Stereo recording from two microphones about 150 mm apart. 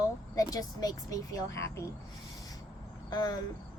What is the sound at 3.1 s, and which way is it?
Speech, 25° left (ahead or behind).